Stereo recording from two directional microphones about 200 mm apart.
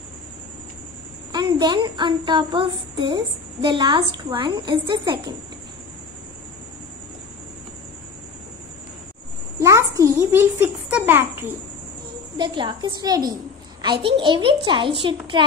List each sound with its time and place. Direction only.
1.3 s speech: 20° right (ahead or behind)
9.6 s a child's voice: 15° right (ahead or behind)
12.4 s a child's voice: 25° right (ahead or behind)